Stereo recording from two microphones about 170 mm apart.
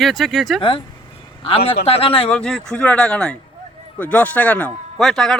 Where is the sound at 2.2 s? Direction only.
5° left (ahead or behind).